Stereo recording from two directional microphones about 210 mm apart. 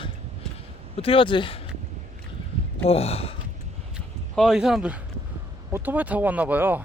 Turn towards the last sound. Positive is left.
turn(degrees=-10)  # may be behind; listen again after turning